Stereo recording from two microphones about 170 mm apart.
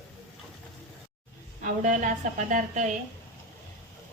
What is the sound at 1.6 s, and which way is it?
A woman's voice, 45° right (ahead or behind).